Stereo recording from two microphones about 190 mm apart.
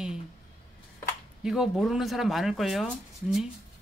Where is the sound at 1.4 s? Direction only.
5° right (ahead or behind).